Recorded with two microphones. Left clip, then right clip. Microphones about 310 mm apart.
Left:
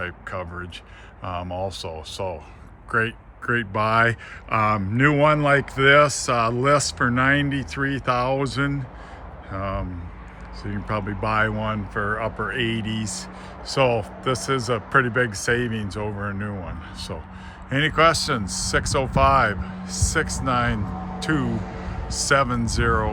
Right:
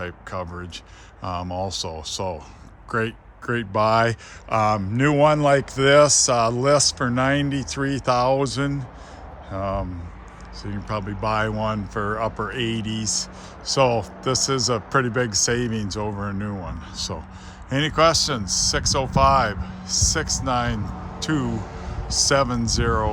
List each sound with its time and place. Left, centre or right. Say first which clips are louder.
0.0 s speech: even; centre
21.4 s a sound: even; left
22.0 s speech: right 1 dB; centre